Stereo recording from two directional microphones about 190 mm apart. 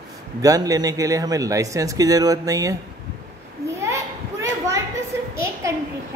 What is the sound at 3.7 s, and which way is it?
Children playing, 15° right (ahead or behind).